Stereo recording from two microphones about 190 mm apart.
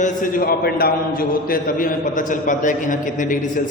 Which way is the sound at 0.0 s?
45° left (ahead or behind).